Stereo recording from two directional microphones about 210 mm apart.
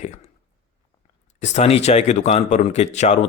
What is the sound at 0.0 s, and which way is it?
Speech, 30° left (ahead or behind).